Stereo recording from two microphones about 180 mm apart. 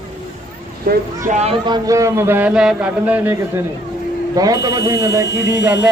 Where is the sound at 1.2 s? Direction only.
35° right (ahead or behind).